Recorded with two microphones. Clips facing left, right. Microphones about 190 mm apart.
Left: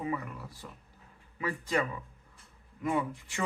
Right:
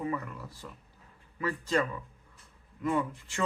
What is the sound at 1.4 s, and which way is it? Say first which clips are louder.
Speech: right 2 dB; 15° left (ahead or behind).